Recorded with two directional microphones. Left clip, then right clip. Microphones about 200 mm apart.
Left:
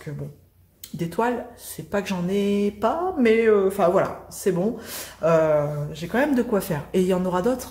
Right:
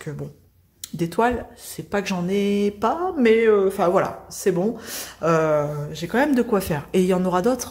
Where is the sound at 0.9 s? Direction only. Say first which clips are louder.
Right 3 dB; 35° right (ahead or behind).